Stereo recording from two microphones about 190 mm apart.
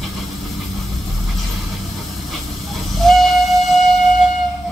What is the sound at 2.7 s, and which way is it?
Train, centre (ahead or behind).